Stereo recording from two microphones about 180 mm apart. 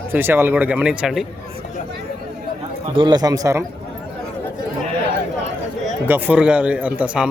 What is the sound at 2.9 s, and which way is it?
Speech, 25° right (ahead or behind).